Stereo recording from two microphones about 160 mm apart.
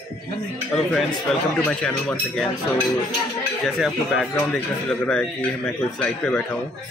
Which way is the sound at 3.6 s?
Centre (ahead or behind).